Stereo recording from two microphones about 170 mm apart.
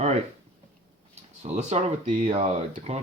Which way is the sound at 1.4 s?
40° right (ahead or behind).